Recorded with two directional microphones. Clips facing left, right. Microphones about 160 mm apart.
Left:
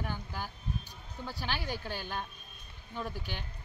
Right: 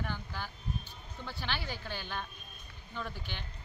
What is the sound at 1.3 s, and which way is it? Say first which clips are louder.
Speech: left 2 dB; 40° left (ahead or behind).